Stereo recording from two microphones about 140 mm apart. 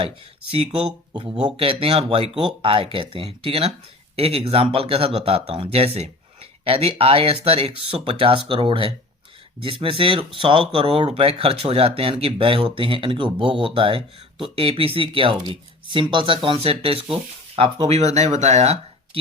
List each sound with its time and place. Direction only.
0.5 s speech: 45° right (ahead or behind)